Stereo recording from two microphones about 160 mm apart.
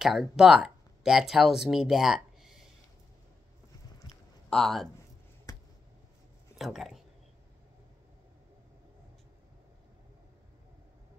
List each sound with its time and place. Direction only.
0.0 s speech: centre (ahead or behind)
4.5 s speech: centre (ahead or behind)
5.5 s a sound: 25° left (ahead or behind)
6.5 s speech: centre (ahead or behind)